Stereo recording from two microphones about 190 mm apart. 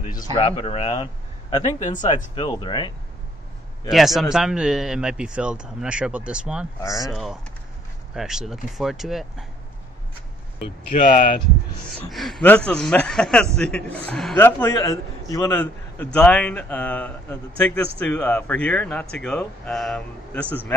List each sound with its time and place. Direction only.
0.2 s a man's voice: 25° left (ahead or behind)
3.9 s speech: centre (ahead or behind)
6.8 s a man's voice: 15° left (ahead or behind)
7.1 s speech: centre (ahead or behind)
12.0 s a man's voice: centre (ahead or behind)
14.6 s a man's voice: 15° left (ahead or behind)